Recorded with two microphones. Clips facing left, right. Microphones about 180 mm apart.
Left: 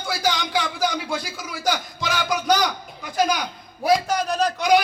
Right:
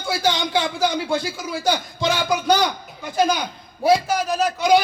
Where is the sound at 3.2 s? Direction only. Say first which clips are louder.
Right 2 dB; 25° right (ahead or behind).